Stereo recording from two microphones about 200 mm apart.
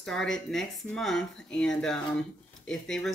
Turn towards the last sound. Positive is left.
turn(degrees=0)  # may be behind; listen again after turning